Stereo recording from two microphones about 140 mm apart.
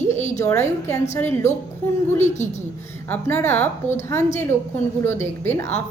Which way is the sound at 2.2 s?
55° left (ahead or behind).